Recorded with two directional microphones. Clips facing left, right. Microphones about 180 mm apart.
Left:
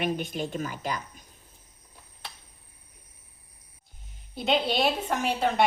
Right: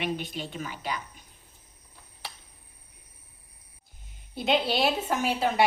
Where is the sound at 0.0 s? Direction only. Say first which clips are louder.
Left 3 dB; 45° left (ahead or behind).